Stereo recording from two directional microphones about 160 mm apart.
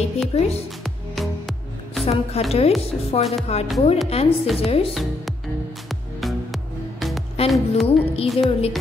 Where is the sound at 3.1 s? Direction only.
40° left (ahead or behind).